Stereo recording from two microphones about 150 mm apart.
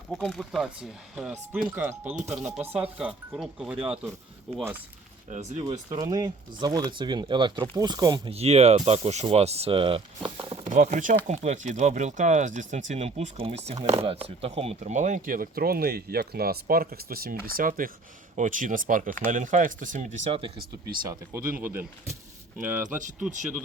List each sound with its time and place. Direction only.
0.1 s speech: centre (ahead or behind)
5.3 s speech: 50° right (ahead or behind)
5.6 s speech: 25° right (ahead or behind)
8.3 s speech: 45° right (ahead or behind)
10.5 s speech: 50° right (ahead or behind)
21.6 s speech: 15° right (ahead or behind)